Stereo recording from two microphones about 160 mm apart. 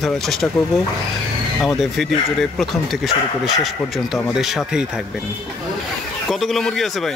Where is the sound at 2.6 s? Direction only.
Centre (ahead or behind).